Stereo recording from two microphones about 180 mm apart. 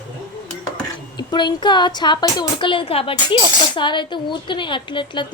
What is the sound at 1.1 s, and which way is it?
A woman's voice, 25° left (ahead or behind).